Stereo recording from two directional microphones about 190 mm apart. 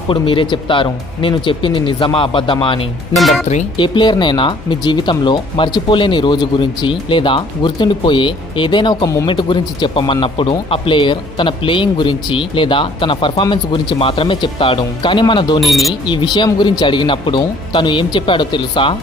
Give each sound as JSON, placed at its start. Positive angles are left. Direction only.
{"t": 0.1, "sound": "speech", "side_deg": 25}
{"t": 3.2, "sound": "speech", "side_deg": 0}
{"t": 3.7, "sound": "speech", "side_deg": 25}
{"t": 15.6, "sound": "speech", "side_deg": 0}
{"t": 15.9, "sound": "speech", "side_deg": 25}